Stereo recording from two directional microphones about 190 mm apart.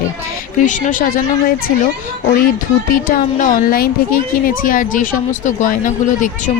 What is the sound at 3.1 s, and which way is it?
Speech, 45° left (ahead or behind).